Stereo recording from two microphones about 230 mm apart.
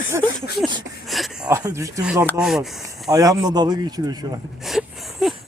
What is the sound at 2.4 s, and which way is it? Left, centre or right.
Speech, centre.